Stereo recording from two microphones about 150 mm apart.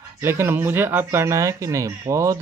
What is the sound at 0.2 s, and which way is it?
Speech, 15° right (ahead or behind).